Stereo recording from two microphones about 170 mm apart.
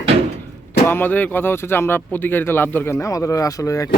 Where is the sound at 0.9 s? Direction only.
10° left (ahead or behind).